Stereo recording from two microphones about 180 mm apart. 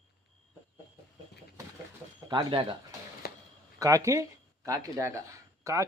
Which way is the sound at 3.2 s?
55° left (ahead or behind).